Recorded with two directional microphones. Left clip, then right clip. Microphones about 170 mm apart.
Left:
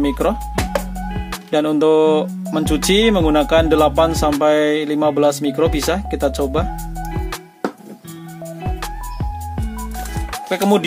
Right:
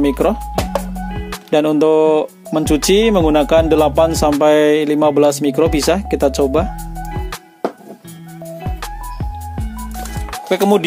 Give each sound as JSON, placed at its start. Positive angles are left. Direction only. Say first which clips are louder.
{"t": 0.0, "sound": "speech", "louder": "right 3 dB", "side_deg": -30}
{"t": 0.7, "sound": "music", "louder": "right 1 dB", "side_deg": 0}
{"t": 1.5, "sound": "speech", "louder": "right 2 dB", "side_deg": -35}
{"t": 7.1, "sound": "music", "louder": "even", "side_deg": 0}
{"t": 8.6, "sound": "music", "louder": "left 2 dB", "side_deg": 0}
{"t": 10.5, "sound": "speech", "louder": "right 3 dB", "side_deg": -40}